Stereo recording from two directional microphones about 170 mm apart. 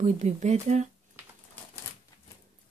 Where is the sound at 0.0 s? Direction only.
45° right (ahead or behind).